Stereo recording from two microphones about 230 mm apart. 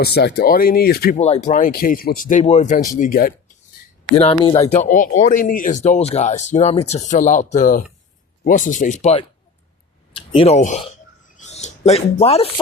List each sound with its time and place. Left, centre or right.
0.0 s speech: left
1.2 s speech: left
4.1 s speech: left